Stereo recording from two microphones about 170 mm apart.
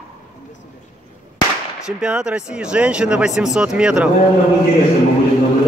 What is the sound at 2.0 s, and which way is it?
Speech, 5° right (ahead or behind).